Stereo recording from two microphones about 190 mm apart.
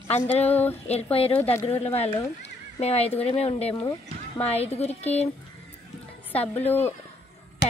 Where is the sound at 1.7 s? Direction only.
30° left (ahead or behind).